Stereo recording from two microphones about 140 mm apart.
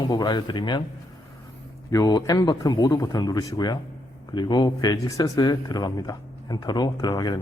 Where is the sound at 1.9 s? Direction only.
25° left (ahead or behind).